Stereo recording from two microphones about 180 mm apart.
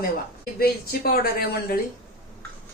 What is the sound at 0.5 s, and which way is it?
Speech, 55° left (ahead or behind).